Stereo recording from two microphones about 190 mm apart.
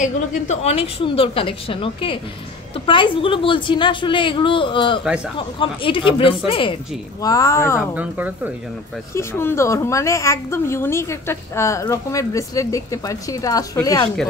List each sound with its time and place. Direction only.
0.0 s a woman's voice: 40° left (ahead or behind); by 7.8 s 15° left (ahead or behind)
7.9 s speech: 10° right (ahead or behind)
9.1 s a woman's voice: 10° left (ahead or behind)